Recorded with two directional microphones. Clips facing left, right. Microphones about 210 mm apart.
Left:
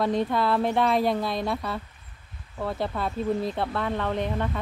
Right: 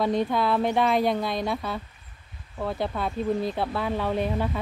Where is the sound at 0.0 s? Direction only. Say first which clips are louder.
Even; centre (ahead or behind).